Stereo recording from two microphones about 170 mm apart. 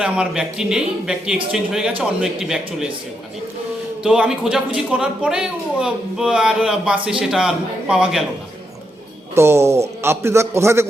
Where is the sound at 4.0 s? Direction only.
5° right (ahead or behind).